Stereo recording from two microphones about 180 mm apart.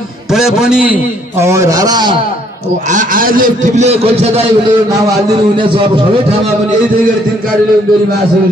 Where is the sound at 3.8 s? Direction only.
35° right (ahead or behind).